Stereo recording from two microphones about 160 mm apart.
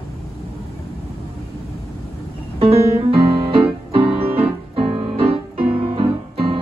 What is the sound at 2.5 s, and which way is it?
Keyboard, 40° right (ahead or behind).